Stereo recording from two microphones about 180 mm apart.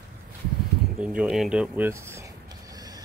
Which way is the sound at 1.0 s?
5° right (ahead or behind).